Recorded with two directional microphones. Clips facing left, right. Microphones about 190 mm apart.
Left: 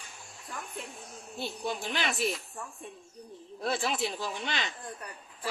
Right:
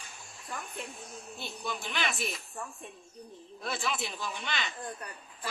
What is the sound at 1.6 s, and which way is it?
Speech, 30° left (ahead or behind).